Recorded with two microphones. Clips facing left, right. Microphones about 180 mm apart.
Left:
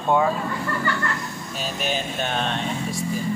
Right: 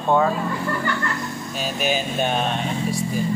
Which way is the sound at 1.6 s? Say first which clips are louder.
Right 3 dB; 5° right (ahead or behind).